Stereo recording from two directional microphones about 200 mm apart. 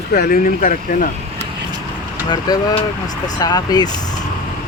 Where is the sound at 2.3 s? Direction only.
20° left (ahead or behind).